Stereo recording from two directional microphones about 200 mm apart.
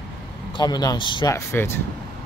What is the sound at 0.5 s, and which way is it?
Speech, 20° left (ahead or behind).